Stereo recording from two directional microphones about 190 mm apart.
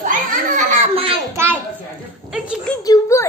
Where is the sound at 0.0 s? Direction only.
45° right (ahead or behind).